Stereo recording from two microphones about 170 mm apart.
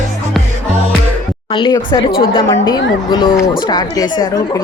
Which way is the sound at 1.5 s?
25° left (ahead or behind).